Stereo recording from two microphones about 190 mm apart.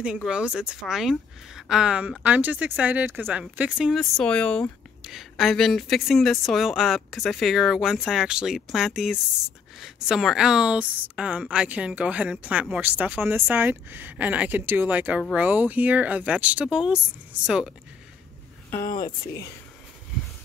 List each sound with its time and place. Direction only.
0.0 s a woman's voice: 5° right (ahead or behind)
18.8 s speech: 50° left (ahead or behind)